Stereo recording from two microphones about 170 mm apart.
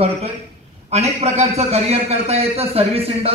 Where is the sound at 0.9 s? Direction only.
40° right (ahead or behind).